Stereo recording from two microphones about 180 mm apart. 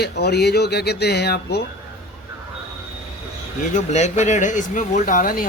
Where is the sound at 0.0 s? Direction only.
65° left (ahead or behind).